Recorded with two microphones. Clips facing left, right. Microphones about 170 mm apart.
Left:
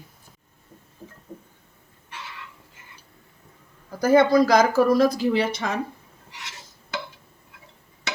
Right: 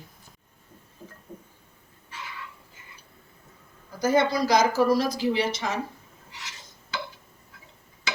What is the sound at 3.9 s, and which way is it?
Speech, 55° left (ahead or behind).